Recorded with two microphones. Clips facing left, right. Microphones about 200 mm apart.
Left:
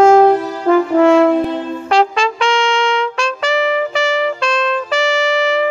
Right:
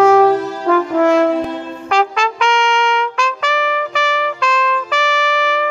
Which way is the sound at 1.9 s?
25° left (ahead or behind).